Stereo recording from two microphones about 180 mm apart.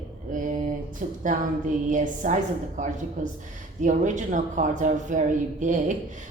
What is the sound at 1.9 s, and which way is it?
A woman's voice, 45° right (ahead or behind).